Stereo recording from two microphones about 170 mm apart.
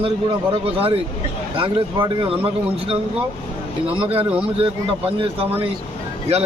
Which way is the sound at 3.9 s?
30° right (ahead or behind).